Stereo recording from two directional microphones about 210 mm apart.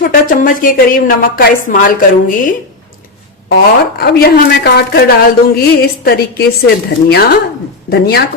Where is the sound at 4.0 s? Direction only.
45° left (ahead or behind).